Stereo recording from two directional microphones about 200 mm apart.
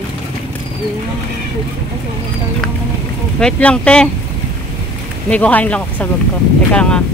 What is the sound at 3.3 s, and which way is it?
Speech, 5° left (ahead or behind).